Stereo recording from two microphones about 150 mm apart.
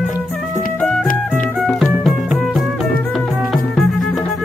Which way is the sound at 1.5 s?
Centre (ahead or behind).